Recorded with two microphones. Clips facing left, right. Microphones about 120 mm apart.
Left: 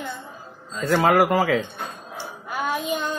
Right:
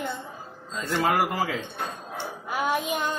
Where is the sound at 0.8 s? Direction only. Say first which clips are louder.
Left 6 dB; 90° left.